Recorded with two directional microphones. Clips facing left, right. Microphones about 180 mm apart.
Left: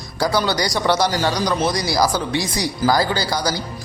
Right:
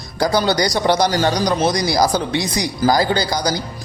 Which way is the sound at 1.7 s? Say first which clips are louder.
Right 2 dB; 20° right (ahead or behind).